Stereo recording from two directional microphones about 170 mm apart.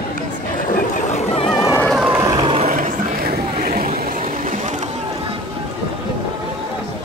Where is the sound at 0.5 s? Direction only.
45° left (ahead or behind); by 1.8 s 20° left (ahead or behind).